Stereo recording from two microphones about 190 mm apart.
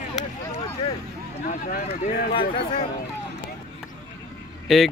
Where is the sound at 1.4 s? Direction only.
50° left (ahead or behind).